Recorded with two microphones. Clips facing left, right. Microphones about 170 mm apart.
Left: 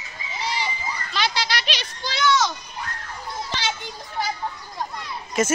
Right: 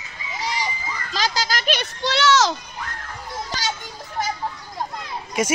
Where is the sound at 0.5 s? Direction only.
40° right (ahead or behind).